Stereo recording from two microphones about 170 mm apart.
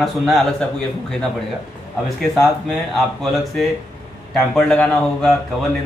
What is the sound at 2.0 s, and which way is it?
Speech, centre (ahead or behind).